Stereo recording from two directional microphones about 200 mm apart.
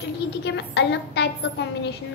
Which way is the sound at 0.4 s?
60° left (ahead or behind).